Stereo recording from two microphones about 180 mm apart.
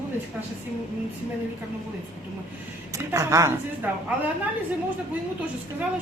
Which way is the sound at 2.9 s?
15° right (ahead or behind).